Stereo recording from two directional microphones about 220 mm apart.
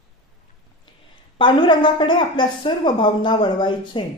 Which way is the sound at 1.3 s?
20° left (ahead or behind).